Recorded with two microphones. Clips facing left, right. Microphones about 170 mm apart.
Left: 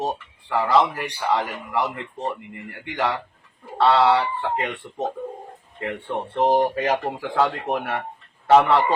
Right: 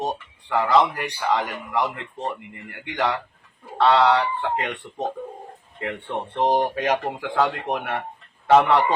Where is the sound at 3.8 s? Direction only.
5° left (ahead or behind).